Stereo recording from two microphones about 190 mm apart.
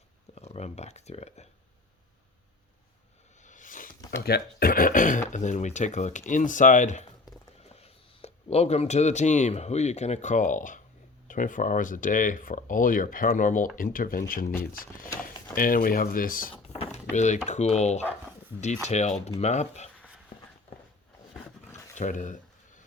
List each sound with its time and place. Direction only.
0.3 s speech: 35° left (ahead or behind)
3.4 s a sound: 40° left (ahead or behind)
4.2 s speech: 55° left (ahead or behind)
16.6 s power windows: 30° left (ahead or behind)
17.2 s speech: 40° left (ahead or behind)
21.9 s speech: 40° left (ahead or behind)